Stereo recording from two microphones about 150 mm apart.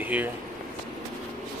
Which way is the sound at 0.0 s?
10° right (ahead or behind).